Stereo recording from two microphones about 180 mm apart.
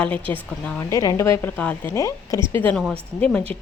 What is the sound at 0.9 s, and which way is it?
A woman's voice, 15° left (ahead or behind).